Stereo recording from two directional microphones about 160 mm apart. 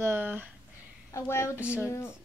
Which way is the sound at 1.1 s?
15° left (ahead or behind).